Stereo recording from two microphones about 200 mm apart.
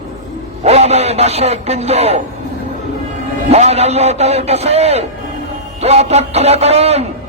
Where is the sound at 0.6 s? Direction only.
35° right (ahead or behind).